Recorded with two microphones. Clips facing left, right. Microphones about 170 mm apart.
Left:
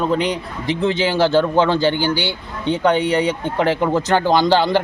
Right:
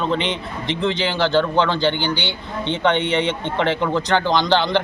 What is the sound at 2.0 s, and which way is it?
Speech, 40° left (ahead or behind).